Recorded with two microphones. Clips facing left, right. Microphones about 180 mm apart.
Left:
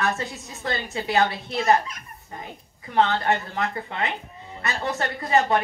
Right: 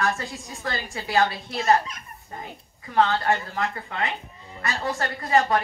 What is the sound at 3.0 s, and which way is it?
Speech, 20° left (ahead or behind).